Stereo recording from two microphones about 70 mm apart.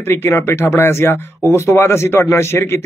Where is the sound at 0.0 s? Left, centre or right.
Left.